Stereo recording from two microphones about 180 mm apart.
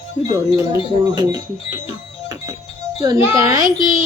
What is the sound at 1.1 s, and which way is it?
Speech, 20° right (ahead or behind).